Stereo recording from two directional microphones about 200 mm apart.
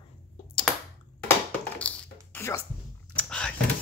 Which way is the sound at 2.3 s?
15° left (ahead or behind).